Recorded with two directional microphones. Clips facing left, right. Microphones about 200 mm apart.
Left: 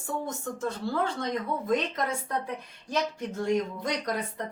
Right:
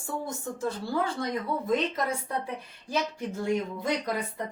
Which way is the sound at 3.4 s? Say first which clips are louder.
Left 2 dB; 5° right (ahead or behind).